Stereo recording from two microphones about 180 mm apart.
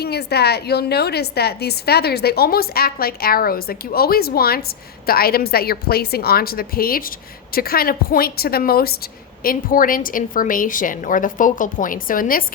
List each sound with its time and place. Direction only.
0.0 s a woman's voice: 65° left (ahead or behind)